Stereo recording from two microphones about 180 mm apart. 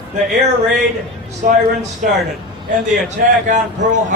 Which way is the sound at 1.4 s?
50° right (ahead or behind).